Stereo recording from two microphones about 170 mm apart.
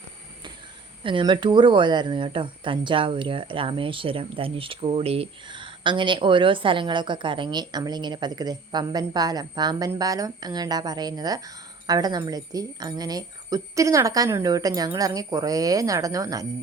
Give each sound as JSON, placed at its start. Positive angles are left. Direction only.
{"t": 1.0, "sound": "speech", "side_deg": -30}